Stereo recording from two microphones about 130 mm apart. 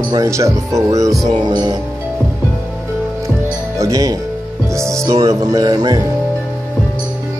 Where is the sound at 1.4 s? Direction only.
30° right (ahead or behind).